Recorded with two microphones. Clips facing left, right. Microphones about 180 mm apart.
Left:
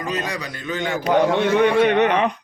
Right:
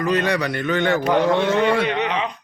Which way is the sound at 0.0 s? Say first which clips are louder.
Right 6 dB; 65° right (ahead or behind).